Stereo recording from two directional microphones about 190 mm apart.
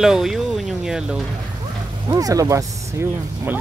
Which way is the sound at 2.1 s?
20° right (ahead or behind).